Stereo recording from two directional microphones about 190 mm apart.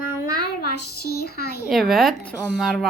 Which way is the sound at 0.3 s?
55° left (ahead or behind).